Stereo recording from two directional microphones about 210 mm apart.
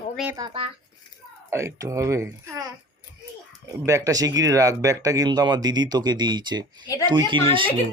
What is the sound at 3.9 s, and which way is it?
Speech, 15° right (ahead or behind).